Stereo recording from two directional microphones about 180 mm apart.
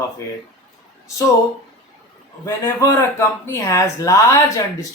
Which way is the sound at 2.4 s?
15° left (ahead or behind).